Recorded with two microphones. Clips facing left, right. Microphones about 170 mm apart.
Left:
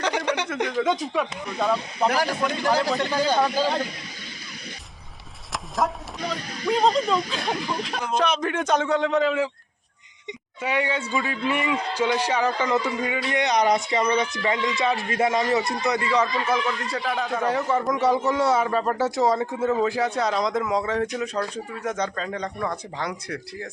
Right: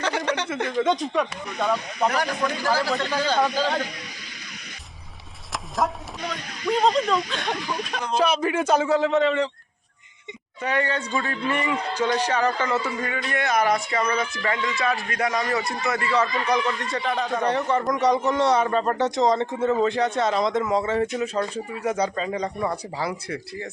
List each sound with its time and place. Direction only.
0.0 s speech: 15° left (ahead or behind)
0.7 s a man's voice: centre (ahead or behind)
2.0 s speech: 30° left (ahead or behind)
3.0 s a man's voice: 15° left (ahead or behind)
5.5 s a sound: centre (ahead or behind)
6.7 s a man's voice: centre (ahead or behind)
10.6 s a man's voice: 10° left (ahead or behind)